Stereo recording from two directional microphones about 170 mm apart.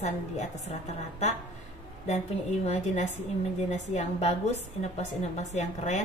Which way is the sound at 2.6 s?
40° left (ahead or behind).